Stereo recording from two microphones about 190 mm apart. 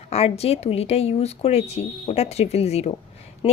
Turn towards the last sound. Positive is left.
turn(degrees=25)  # may be behind; listen again after turning